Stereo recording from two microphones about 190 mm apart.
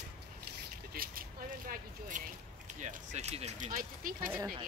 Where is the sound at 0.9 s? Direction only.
50° right (ahead or behind).